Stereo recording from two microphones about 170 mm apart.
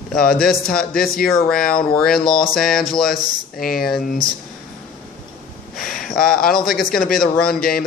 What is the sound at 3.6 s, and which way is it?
Speech, 60° left (ahead or behind).